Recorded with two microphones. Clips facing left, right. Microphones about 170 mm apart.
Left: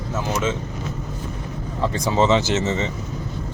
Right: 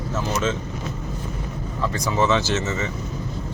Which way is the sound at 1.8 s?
25° left (ahead or behind).